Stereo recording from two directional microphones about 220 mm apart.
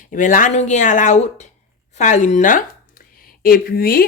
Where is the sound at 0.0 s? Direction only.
35° left (ahead or behind).